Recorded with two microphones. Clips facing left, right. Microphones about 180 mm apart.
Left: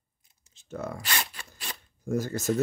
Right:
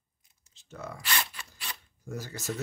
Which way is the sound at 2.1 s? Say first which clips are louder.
Left 9 dB; 45° left (ahead or behind).